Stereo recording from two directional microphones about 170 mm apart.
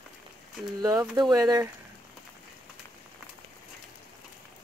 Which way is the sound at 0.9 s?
10° right (ahead or behind).